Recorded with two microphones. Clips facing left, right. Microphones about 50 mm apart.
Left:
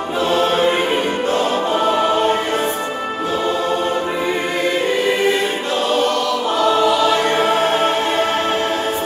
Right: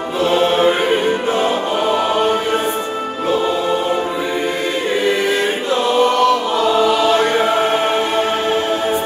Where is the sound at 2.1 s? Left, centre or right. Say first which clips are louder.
Right 1 dB; right.